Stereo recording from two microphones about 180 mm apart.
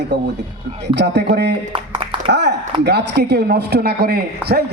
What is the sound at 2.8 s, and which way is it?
Speech, 65° right (ahead or behind).